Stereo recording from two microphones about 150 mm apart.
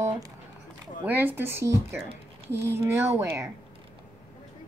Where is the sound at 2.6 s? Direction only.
15° right (ahead or behind).